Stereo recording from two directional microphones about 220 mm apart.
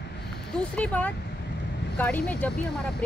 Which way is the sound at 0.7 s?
5° left (ahead or behind).